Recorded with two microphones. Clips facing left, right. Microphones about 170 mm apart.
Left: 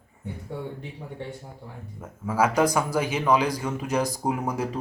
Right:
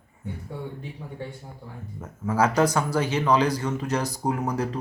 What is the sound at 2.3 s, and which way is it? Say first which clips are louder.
Speech: even; 10° left (ahead or behind).